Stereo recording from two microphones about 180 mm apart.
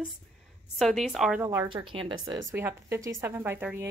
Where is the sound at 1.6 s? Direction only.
30° right (ahead or behind).